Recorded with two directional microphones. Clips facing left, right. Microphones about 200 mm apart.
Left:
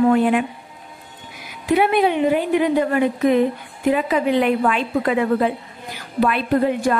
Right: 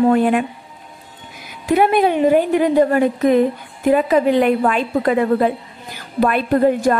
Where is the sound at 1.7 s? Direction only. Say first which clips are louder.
Right 2 dB; 45° right (ahead or behind).